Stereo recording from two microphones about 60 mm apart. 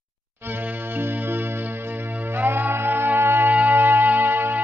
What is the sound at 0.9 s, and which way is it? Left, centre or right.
Music, right.